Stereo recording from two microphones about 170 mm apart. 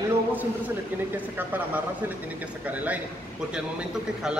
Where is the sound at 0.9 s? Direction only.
10° right (ahead or behind).